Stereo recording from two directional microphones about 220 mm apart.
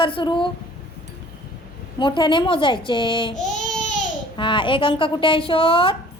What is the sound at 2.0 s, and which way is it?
A woman's voice, 20° left (ahead or behind).